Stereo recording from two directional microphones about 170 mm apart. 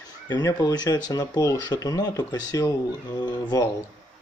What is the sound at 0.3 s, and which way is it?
Speech, 20° left (ahead or behind).